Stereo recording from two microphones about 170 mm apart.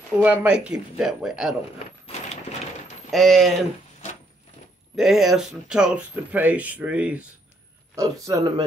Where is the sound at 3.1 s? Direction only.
Centre (ahead or behind).